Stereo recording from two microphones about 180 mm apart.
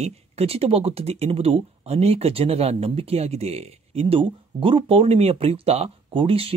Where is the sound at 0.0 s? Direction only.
35° right (ahead or behind).